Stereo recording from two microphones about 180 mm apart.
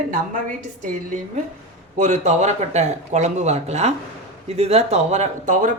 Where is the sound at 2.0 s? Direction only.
40° right (ahead or behind).